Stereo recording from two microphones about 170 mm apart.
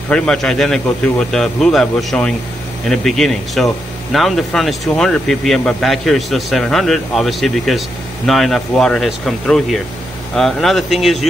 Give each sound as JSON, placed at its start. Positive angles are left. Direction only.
{"t": 0.1, "sound": "speech", "side_deg": 5}